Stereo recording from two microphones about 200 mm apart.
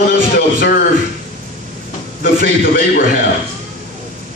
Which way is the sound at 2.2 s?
45° left (ahead or behind).